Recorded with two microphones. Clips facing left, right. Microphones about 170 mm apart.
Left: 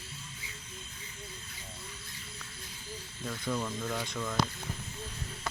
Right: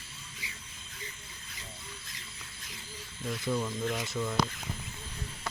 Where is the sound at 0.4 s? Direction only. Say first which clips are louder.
Right 1 dB; 90° right.